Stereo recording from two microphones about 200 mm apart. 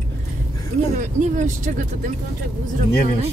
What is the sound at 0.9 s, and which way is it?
Speech, 40° right (ahead or behind).